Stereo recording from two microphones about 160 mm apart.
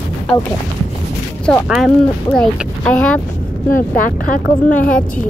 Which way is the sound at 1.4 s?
Centre (ahead or behind).